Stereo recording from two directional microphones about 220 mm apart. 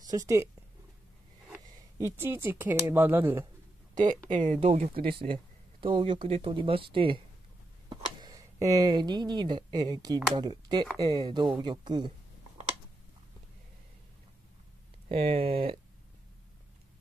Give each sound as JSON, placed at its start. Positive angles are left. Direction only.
{"t": 2.1, "sound": "speech", "side_deg": -10}
{"t": 3.9, "sound": "speech", "side_deg": -35}
{"t": 15.0, "sound": "speech", "side_deg": -25}